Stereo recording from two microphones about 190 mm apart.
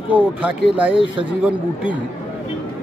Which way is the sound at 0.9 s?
25° right (ahead or behind).